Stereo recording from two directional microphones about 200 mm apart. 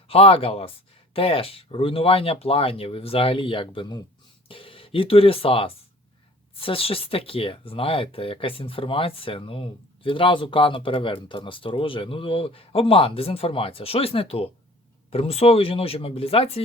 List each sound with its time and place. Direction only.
0.1 s speech: 30° left (ahead or behind)